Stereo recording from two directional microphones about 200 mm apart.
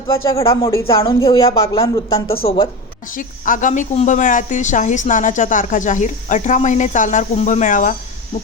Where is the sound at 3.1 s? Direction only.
40° left (ahead or behind).